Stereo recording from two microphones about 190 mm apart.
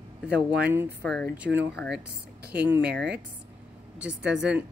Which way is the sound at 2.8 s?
60° right (ahead or behind).